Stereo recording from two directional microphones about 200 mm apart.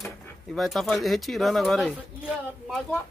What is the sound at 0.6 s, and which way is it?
Speech, centre (ahead or behind).